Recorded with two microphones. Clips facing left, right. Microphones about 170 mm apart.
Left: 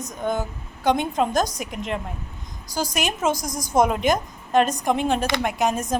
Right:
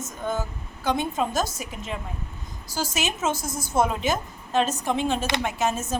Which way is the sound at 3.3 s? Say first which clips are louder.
Left 2 dB; 5° right (ahead or behind).